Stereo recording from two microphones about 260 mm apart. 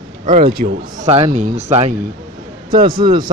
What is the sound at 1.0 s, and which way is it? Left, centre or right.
Speech, right.